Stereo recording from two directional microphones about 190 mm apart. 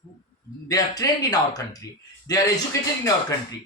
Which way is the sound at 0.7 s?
20° left (ahead or behind).